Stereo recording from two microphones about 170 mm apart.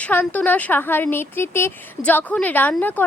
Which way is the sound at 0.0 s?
10° left (ahead or behind).